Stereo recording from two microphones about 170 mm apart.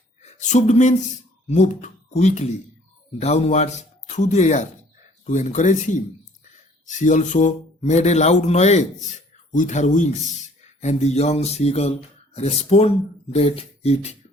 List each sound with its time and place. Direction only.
0.2 s a man's voice: 45° left (ahead or behind)